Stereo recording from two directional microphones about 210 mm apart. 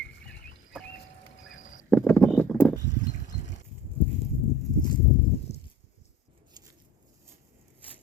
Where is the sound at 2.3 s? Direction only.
10° left (ahead or behind).